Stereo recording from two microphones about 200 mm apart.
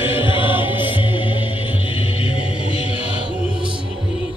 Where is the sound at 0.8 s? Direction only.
25° left (ahead or behind).